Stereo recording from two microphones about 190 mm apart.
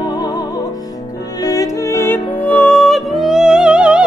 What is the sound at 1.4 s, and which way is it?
Music, 20° left (ahead or behind).